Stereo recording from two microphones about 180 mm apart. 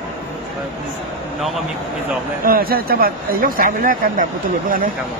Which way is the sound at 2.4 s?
55° right (ahead or behind).